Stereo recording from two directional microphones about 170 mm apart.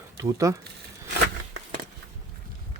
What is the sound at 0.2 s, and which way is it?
Speech, 20° right (ahead or behind).